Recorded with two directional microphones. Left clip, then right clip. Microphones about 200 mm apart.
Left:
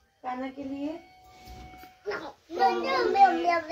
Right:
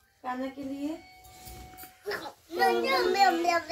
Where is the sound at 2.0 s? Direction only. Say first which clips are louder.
Left 1 dB; 15° left (ahead or behind).